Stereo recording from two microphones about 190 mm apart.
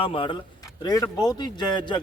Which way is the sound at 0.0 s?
30° left (ahead or behind).